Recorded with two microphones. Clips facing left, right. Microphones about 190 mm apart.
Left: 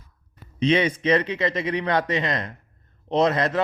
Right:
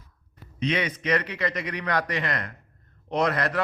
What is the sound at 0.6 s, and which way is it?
A man's voice, 25° left (ahead or behind).